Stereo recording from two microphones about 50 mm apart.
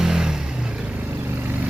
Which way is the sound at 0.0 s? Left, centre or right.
Centre.